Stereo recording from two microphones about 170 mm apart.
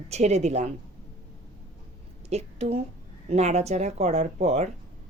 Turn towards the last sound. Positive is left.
turn(degrees=-40)  # may be behind; listen again after turning